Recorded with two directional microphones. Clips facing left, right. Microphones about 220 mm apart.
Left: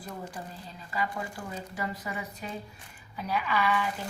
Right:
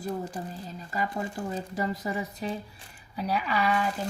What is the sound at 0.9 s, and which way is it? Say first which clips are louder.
Speech: right 2 dB; 40° right (ahead or behind).